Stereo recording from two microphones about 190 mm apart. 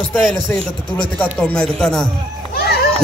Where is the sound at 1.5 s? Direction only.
5° left (ahead or behind).